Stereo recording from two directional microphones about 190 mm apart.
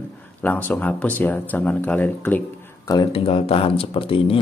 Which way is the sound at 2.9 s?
25° left (ahead or behind).